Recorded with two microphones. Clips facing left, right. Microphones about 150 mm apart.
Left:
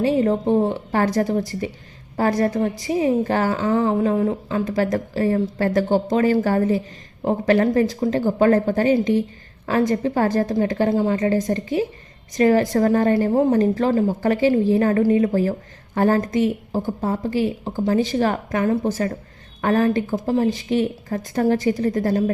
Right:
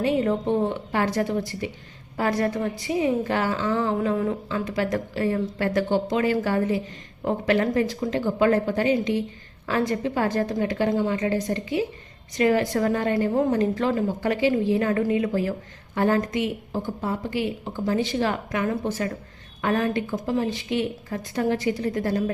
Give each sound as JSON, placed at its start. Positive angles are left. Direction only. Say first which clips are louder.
{"t": 0.0, "sound": "a woman's voice", "louder": "left 4 dB", "side_deg": 35}
{"t": 4.6, "sound": "a woman's voice", "louder": "left 5 dB", "side_deg": 45}